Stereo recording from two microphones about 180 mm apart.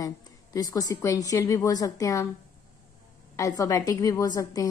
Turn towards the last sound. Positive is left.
turn(degrees=20)  # may be behind; listen again after turning